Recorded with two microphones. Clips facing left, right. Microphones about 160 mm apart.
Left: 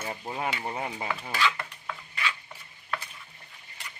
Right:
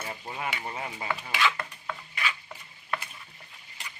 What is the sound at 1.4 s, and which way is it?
Stir, 5° right (ahead or behind).